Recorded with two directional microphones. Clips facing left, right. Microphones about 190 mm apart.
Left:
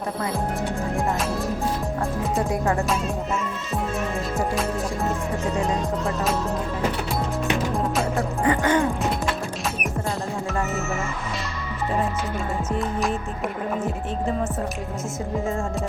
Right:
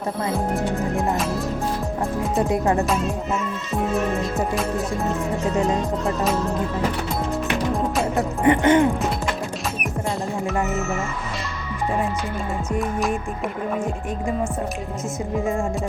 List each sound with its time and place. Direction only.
2.5 s music: 25° right (ahead or behind)
8.4 s music: 20° right (ahead or behind)